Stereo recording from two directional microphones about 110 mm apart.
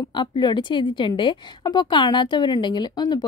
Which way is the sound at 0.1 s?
40° left (ahead or behind).